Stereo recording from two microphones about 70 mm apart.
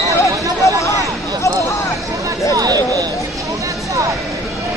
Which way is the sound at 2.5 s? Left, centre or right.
Right.